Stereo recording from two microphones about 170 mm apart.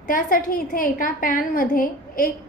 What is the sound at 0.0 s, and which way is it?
A woman's voice, 55° left (ahead or behind).